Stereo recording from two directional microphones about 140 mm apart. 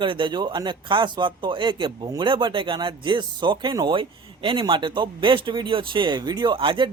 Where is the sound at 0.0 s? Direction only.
35° right (ahead or behind).